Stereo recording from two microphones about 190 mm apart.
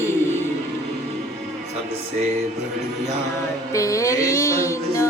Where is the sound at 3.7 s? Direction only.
15° left (ahead or behind).